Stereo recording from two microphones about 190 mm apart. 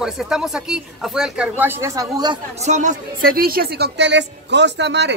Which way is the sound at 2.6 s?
40° right (ahead or behind).